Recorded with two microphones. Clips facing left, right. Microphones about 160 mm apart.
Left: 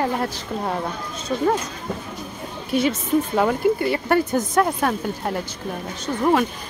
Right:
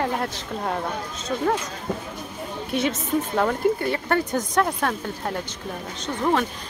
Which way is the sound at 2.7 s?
5° left (ahead or behind).